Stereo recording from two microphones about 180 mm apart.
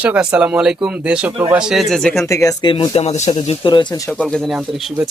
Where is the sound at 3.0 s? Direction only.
40° left (ahead or behind); by 4.1 s 20° left (ahead or behind).